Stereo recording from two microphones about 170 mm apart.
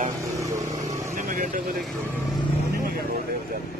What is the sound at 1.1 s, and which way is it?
Vehicle, 55° right (ahead or behind).